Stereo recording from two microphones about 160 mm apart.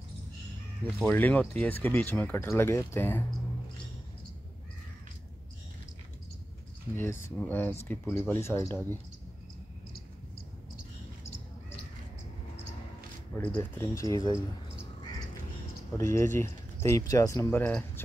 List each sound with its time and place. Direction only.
0.9 s speech: 10° left (ahead or behind)
7.0 s speech: 15° left (ahead or behind)
13.3 s speech: 10° left (ahead or behind)
16.0 s speech: 15° left (ahead or behind)